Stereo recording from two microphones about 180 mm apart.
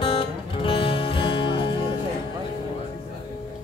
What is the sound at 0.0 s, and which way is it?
Music, 30° left (ahead or behind).